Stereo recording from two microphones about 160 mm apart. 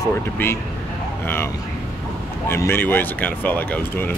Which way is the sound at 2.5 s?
15° left (ahead or behind).